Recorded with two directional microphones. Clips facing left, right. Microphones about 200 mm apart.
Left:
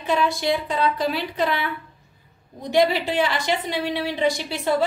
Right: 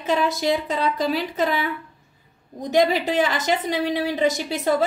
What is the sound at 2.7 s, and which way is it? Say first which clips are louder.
A woman's voice: right 1 dB; 40° right (ahead or behind).